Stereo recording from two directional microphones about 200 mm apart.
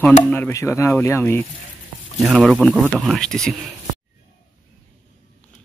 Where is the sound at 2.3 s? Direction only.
Centre (ahead or behind).